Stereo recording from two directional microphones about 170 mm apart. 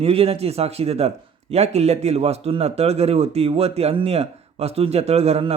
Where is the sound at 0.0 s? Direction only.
35° right (ahead or behind).